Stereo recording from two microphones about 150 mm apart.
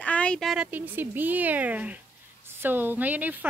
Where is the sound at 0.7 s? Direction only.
10° right (ahead or behind).